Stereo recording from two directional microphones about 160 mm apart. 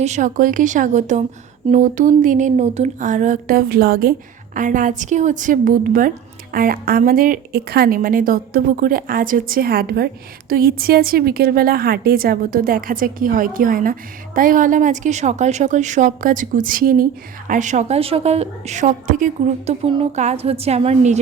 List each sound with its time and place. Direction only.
0.0 s a woman's voice: 50° right (ahead or behind); by 4.1 s 70° right (ahead or behind)
4.5 s a woman's voice: 55° right (ahead or behind)
17.5 s a woman's voice: 50° right (ahead or behind)